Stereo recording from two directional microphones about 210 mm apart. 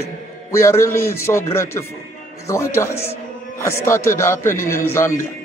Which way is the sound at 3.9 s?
15° left (ahead or behind).